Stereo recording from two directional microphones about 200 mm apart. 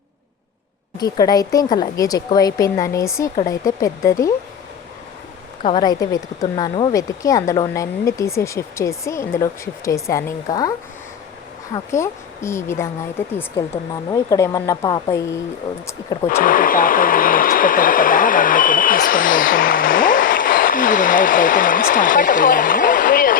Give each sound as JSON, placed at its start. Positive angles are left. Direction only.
{"t": 0.9, "sound": "a woman's voice", "side_deg": 20}
{"t": 5.6, "sound": "a woman's voice", "side_deg": 20}
{"t": 14.1, "sound": "a woman's voice", "side_deg": 15}
{"t": 16.2, "sound": "speech", "side_deg": 45}